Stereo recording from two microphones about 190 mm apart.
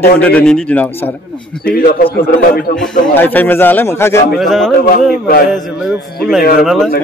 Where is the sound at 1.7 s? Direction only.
50° left (ahead or behind).